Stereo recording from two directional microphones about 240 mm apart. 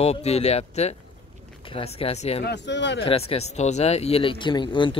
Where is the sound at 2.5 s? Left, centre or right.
Left.